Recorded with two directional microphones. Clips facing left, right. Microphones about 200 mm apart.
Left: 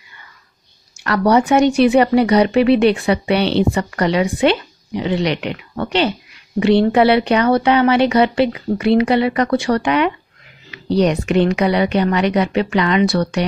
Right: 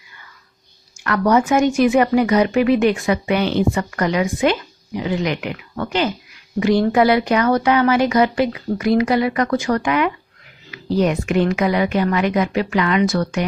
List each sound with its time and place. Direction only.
1.0 s speech: 35° left (ahead or behind)